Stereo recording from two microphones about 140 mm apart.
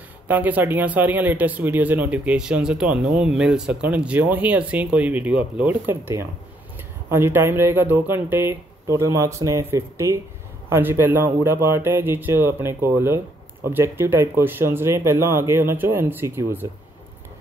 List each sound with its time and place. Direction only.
0.3 s speech: 10° right (ahead or behind)